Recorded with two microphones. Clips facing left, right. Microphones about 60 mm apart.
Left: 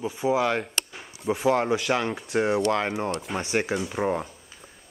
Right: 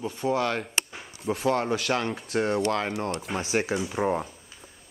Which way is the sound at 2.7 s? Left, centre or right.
Centre.